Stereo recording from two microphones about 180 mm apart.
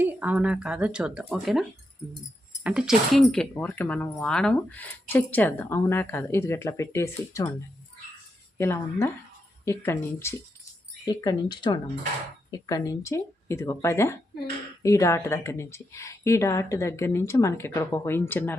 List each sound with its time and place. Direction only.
0.0 s speech: 10° right (ahead or behind); by 7.5 s 15° left (ahead or behind)
8.5 s speech: 15° left (ahead or behind)